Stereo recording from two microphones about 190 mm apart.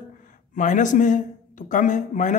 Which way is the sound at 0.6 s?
40° left (ahead or behind).